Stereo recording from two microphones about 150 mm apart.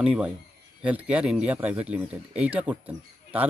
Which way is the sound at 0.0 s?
5° right (ahead or behind).